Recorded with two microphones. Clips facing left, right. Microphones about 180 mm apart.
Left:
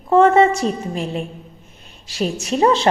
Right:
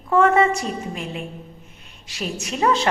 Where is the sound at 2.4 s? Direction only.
30° left (ahead or behind).